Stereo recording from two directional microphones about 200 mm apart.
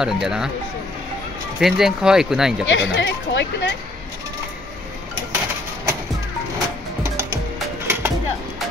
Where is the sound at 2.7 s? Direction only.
60° left (ahead or behind).